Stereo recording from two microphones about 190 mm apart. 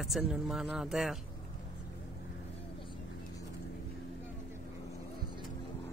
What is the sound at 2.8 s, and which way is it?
Vehicle, 25° left (ahead or behind).